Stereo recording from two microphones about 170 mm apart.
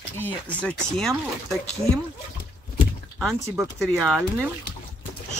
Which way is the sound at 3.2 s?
Centre (ahead or behind).